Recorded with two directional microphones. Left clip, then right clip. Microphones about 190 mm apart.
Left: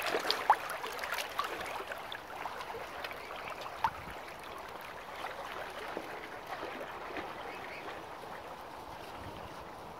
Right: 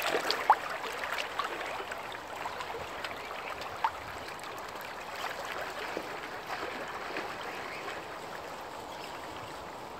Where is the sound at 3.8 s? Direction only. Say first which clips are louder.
Right 2 dB; 50° left (ahead or behind).